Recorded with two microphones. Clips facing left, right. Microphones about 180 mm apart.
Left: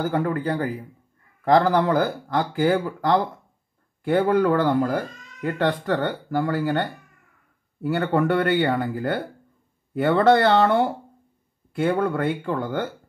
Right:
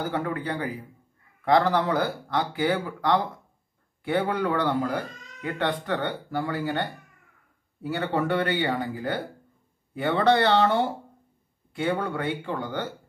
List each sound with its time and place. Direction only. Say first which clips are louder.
0.0 s speech: left 5 dB; 45° left (ahead or behind)
7.8 s speech: left 5 dB; 50° left (ahead or behind)